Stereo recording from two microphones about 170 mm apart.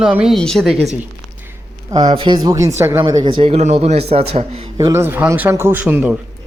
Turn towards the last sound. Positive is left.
turn(degrees=-10)  # may be behind; listen again after turning